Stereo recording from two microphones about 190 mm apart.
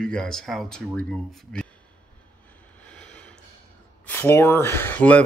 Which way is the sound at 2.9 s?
5° left (ahead or behind).